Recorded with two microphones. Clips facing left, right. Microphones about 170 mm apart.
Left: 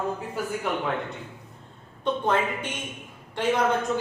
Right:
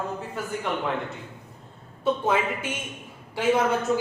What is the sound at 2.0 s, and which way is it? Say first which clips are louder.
A woman's voice: right 1 dB; 5° right (ahead or behind).